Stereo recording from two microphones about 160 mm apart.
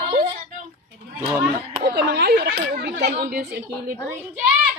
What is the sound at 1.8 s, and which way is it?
Speech, 85° right.